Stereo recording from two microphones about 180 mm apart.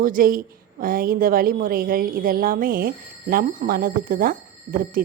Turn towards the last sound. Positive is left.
turn(degrees=-50)  # may be behind; listen again after turning